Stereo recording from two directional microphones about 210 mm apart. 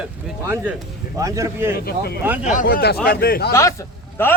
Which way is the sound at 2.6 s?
50° left (ahead or behind).